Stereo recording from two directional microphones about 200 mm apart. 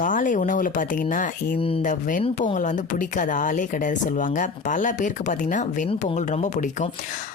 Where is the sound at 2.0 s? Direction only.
40° left (ahead or behind).